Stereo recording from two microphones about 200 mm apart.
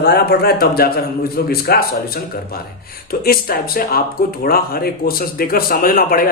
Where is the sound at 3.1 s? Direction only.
50° left (ahead or behind).